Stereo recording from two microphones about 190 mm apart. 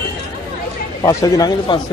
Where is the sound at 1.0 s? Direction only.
15° left (ahead or behind).